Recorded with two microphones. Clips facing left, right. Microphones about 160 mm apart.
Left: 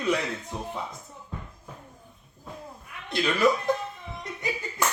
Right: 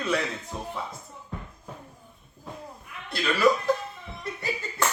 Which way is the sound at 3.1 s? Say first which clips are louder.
Even; 20° left (ahead or behind).